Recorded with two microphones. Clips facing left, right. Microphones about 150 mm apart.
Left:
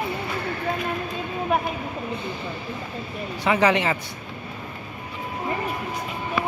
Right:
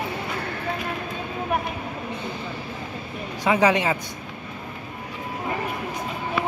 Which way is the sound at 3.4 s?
10° right (ahead or behind).